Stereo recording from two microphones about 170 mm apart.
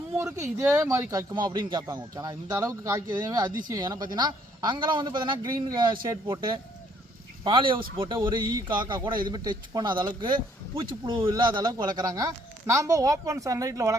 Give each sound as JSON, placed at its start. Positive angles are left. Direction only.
{"t": 0.2, "sound": "a man's voice", "side_deg": -15}